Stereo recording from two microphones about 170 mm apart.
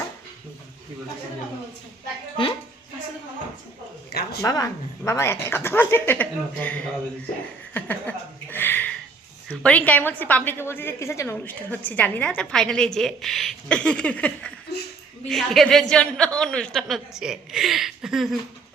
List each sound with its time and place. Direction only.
4.1 s a woman's voice: 70° left (ahead or behind)
4.4 s a woman's voice: 20° left (ahead or behind)
7.7 s a sound: 10° left (ahead or behind)
9.6 s a woman's voice: 10° left (ahead or behind)
14.7 s a sound: 70° left (ahead or behind)
15.3 s a woman's voice: centre (ahead or behind)